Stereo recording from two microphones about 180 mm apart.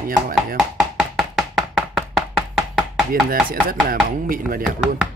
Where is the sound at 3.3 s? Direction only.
55° right (ahead or behind).